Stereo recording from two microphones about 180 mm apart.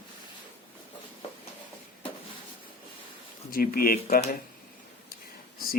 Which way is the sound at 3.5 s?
55° left (ahead or behind).